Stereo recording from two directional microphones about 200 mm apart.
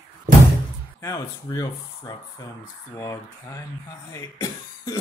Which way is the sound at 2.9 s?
15° left (ahead or behind).